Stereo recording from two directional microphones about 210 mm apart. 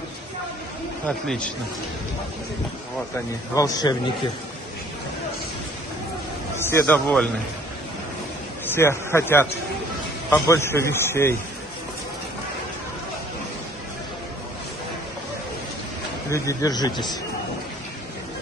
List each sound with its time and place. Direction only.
1.0 s a man's voice: 5° left (ahead or behind)
3.5 s a man's voice: 20° left (ahead or behind)
6.5 s a man's voice: 10° left (ahead or behind)
8.6 s a man's voice: 10° left (ahead or behind)
16.3 s a man's voice: 15° left (ahead or behind)